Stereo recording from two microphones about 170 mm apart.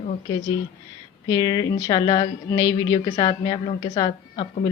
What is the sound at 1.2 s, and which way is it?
A woman's voice, 20° left (ahead or behind).